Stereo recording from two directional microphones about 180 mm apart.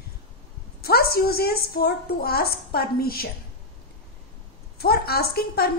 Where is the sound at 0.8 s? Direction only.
60° left (ahead or behind).